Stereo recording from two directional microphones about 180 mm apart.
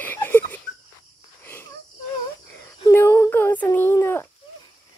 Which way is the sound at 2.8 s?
15° left (ahead or behind).